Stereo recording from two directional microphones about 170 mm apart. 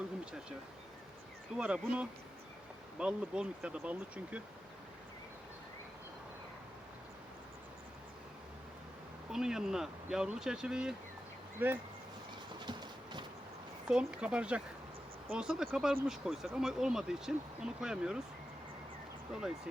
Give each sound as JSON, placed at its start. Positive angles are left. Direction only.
{"t": 1.5, "sound": "speech", "side_deg": -5}
{"t": 9.3, "sound": "speech", "side_deg": -5}
{"t": 12.6, "sound": "train", "side_deg": -25}
{"t": 13.8, "sound": "speech", "side_deg": -5}
{"t": 19.3, "sound": "speech", "side_deg": -5}